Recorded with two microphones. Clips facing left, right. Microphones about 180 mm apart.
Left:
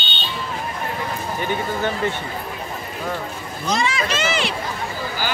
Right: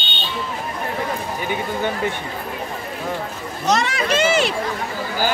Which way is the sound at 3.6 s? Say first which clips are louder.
Right 2 dB; 65° right (ahead or behind).